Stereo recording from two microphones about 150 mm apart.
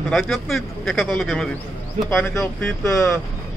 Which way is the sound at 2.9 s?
20° left (ahead or behind).